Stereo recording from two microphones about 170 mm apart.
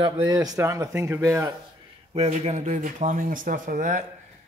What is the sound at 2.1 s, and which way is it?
Speech, 40° right (ahead or behind).